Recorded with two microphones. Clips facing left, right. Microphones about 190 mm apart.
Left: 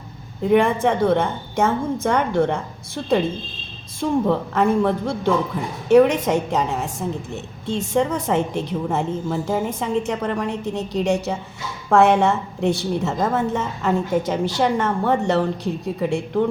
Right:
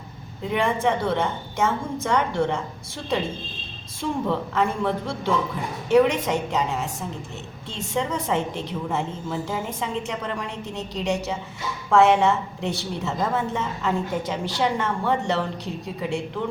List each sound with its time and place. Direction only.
0.4 s a woman's voice: 50° left (ahead or behind)
4.3 s a woman's voice: 45° left (ahead or behind)
7.7 s a woman's voice: 50° left (ahead or behind)